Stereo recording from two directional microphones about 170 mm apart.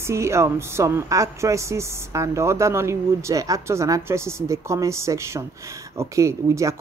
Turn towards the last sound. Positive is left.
turn(degrees=-15)  # may be behind; listen again after turning